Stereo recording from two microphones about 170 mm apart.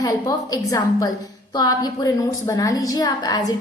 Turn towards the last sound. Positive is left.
turn(degrees=25)  # may be behind; listen again after turning